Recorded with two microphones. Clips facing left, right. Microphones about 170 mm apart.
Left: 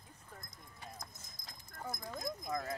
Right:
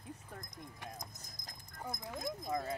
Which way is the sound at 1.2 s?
40° right (ahead or behind).